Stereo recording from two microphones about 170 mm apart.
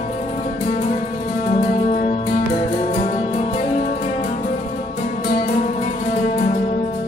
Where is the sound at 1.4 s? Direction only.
45° left (ahead or behind).